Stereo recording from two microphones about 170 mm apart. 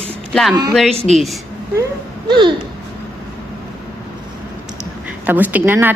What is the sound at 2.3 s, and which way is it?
Speech, 25° right (ahead or behind).